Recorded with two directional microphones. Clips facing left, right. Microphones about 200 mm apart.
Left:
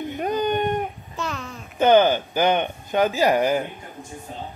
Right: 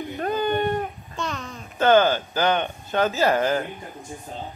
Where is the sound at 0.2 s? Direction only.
15° left (ahead or behind).